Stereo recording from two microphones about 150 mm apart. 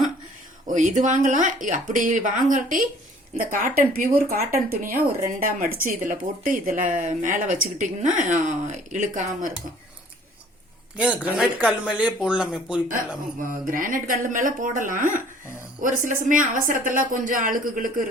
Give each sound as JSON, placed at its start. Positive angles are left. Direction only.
{"t": 0.7, "sound": "speech", "side_deg": -55}
{"t": 10.9, "sound": "speech", "side_deg": -5}
{"t": 13.5, "sound": "speech", "side_deg": -65}